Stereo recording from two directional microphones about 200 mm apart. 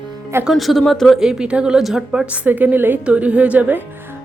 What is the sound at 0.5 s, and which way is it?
A woman's voice, centre (ahead or behind).